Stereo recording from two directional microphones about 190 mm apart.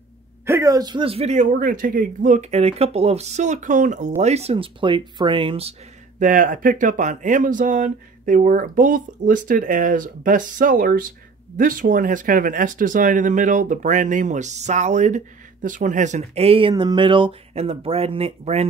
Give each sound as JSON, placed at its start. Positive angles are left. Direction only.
{"t": 0.5, "sound": "a man's voice", "side_deg": -15}